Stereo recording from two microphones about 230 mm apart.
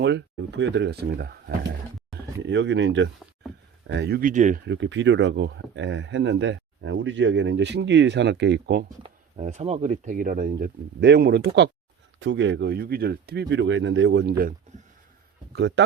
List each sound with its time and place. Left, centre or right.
0.0 s speech: right
4.6 s speech: right
9.0 s speech: right
15.5 s speech: right